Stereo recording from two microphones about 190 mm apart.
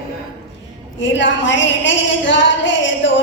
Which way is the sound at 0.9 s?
75° left (ahead or behind).